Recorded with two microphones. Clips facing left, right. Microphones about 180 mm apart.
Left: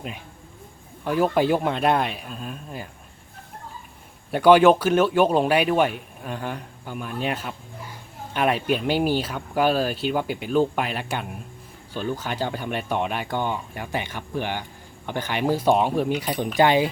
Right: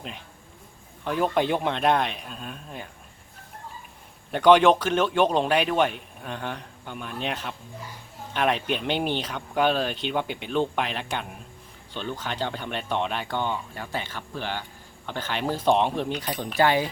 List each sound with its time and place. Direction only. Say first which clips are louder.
1.0 s speech: left 3 dB; 5° left (ahead or behind)
4.3 s a man's voice: left 2 dB; 10° left (ahead or behind)